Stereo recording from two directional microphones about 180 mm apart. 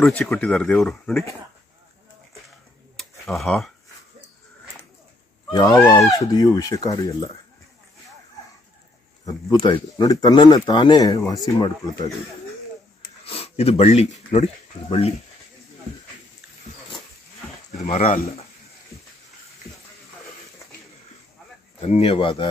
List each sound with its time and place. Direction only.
0.0 s speech: 5° left (ahead or behind)
3.0 s tick-tock: centre (ahead or behind)
5.5 s speech: 20° left (ahead or behind)
9.2 s speech: 25° left (ahead or behind)
13.2 s speech: 35° left (ahead or behind)
17.8 s speech: 45° left (ahead or behind)
21.8 s speech: 35° left (ahead or behind)